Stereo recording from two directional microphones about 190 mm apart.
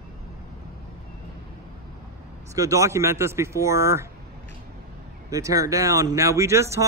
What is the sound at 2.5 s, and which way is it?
Speech, 15° right (ahead or behind).